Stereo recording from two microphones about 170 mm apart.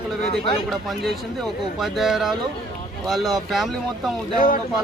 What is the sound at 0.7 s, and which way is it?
Speech, centre (ahead or behind).